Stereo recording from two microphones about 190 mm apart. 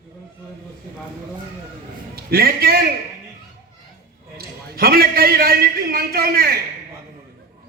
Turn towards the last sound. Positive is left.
turn(degrees=-50)  # may be behind; listen again after turning